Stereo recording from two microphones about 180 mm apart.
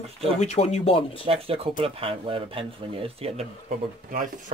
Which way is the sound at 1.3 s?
30° right (ahead or behind).